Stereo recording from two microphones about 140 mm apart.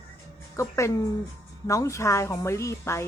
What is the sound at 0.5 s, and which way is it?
Speech, 20° left (ahead or behind).